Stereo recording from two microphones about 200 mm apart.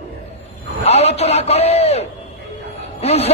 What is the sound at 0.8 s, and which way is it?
A man's voice, 30° left (ahead or behind).